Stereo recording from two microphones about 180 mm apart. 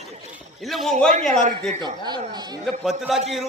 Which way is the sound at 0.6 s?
Centre (ahead or behind).